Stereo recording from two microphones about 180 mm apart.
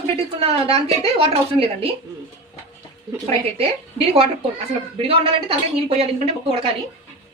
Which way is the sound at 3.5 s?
35° right (ahead or behind).